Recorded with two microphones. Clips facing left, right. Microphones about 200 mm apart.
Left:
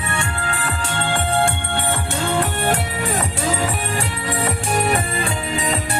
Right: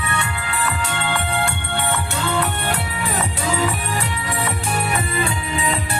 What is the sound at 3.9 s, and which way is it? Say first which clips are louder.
Music: left 1 dB; 35° left (ahead or behind).